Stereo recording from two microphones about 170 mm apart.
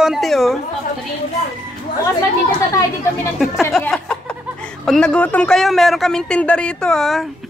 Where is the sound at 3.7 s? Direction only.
Centre (ahead or behind).